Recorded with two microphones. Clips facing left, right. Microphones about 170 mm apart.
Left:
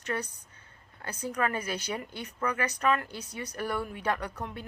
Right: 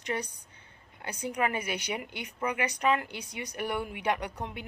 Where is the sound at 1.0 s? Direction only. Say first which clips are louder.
Even; 25° right (ahead or behind).